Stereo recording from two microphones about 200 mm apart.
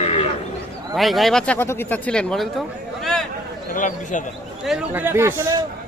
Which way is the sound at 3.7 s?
40° left (ahead or behind).